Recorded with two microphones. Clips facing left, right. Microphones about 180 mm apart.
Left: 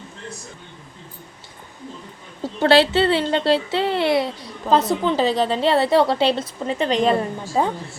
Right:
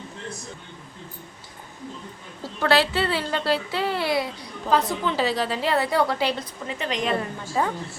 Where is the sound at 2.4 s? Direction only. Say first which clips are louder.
Left 6 dB; 25° left (ahead or behind).